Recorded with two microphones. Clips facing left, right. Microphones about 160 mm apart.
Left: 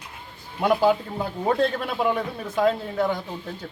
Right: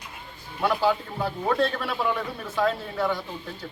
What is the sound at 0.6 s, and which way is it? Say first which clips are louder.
A man's voice: left 4 dB; 20° left (ahead or behind).